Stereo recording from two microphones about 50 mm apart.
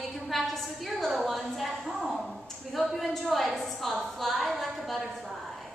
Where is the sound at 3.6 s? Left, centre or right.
Centre.